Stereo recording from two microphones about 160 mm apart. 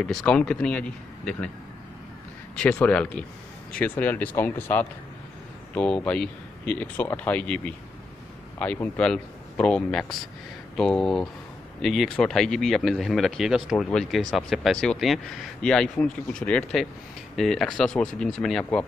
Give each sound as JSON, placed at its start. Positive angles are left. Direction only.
{"t": 0.0, "sound": "speech", "side_deg": 5}
{"t": 2.5, "sound": "speech", "side_deg": 5}